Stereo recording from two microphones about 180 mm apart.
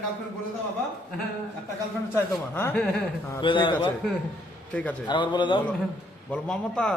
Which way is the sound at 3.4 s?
25° left (ahead or behind).